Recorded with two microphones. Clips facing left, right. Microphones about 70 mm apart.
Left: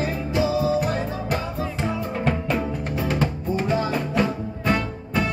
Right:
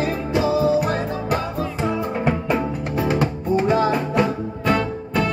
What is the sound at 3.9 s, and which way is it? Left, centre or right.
Music, centre.